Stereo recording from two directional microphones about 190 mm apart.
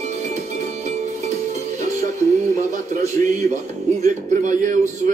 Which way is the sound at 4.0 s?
40° right (ahead or behind).